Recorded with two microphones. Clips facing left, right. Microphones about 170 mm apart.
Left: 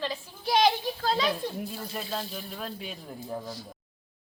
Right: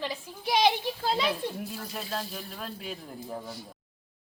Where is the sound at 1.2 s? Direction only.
Centre (ahead or behind).